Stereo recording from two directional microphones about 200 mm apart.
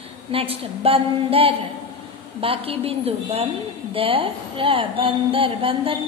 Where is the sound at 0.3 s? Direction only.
30° right (ahead or behind).